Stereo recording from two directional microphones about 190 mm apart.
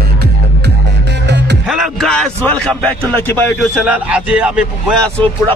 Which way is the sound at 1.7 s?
Centre (ahead or behind).